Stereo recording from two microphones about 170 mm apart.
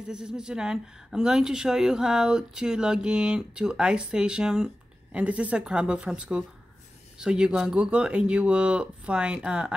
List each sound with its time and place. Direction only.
0.1 s a woman's voice: 5° right (ahead or behind)